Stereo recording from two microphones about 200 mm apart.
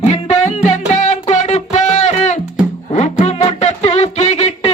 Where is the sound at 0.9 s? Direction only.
35° left (ahead or behind).